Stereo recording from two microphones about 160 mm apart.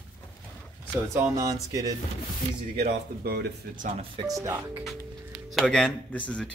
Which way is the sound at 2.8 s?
75° right (ahead or behind).